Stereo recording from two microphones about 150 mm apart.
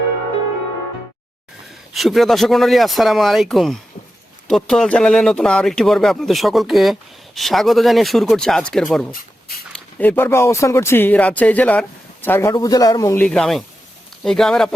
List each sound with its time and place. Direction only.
1.9 s a man's voice: centre (ahead or behind); by 13.2 s 20° left (ahead or behind)
13.2 s speech: 5° left (ahead or behind)